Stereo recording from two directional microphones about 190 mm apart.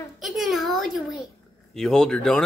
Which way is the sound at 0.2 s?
Centre (ahead or behind).